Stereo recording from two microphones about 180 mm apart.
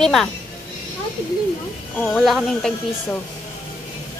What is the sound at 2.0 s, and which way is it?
Speech, centre (ahead or behind).